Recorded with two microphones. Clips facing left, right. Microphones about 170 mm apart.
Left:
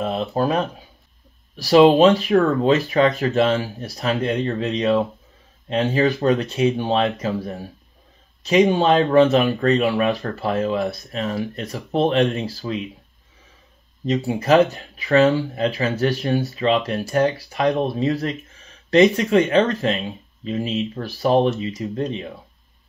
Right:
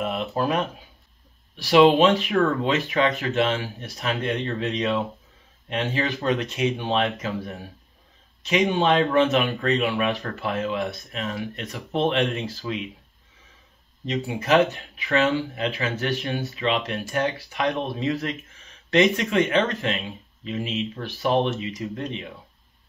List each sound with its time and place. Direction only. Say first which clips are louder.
0.0 s speech: left 4 dB; 30° left (ahead or behind)
14.0 s speech: left 6 dB; 35° left (ahead or behind)